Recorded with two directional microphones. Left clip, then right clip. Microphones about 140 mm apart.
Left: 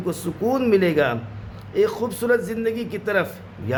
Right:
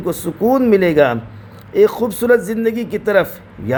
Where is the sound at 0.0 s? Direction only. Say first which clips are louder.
Right 7 dB; 35° right (ahead or behind).